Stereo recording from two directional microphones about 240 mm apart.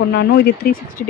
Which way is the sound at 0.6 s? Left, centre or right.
Left.